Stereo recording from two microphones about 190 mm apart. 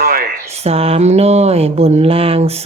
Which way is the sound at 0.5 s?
35° right (ahead or behind).